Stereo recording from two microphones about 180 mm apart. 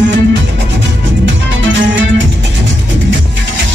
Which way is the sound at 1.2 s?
90° right.